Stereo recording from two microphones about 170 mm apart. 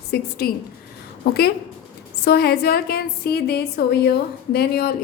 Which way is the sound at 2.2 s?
70° left (ahead or behind).